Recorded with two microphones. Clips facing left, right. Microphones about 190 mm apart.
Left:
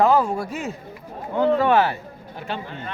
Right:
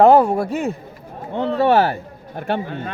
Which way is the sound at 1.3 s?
25° right (ahead or behind).